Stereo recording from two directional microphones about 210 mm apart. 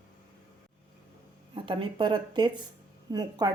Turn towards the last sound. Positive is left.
turn(degrees=-20)  # may be behind; listen again after turning